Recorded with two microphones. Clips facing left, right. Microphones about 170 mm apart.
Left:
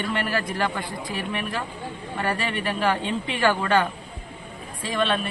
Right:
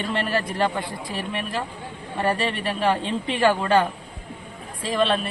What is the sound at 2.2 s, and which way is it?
A woman's voice, 30° right (ahead or behind).